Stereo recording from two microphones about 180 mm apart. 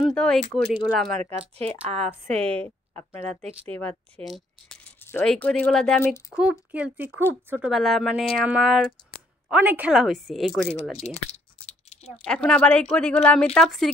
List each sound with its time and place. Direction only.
0.0 s speech: 5° left (ahead or behind)
0.6 s speech: 30° left (ahead or behind)
1.9 s speech: 35° right (ahead or behind)
2.6 s speech: 10° left (ahead or behind)
4.8 s a sound: 10° left (ahead or behind)
5.3 s speech: 5° left (ahead or behind)
10.7 s speech: 35° left (ahead or behind)
11.2 s a sound: 35° left (ahead or behind)
12.3 s speech: 5° left (ahead or behind)